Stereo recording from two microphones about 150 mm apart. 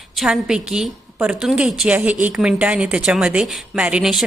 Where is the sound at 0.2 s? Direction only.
5° right (ahead or behind).